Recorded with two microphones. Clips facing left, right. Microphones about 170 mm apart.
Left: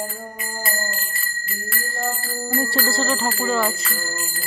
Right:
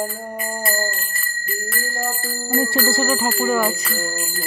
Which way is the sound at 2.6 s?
20° right (ahead or behind).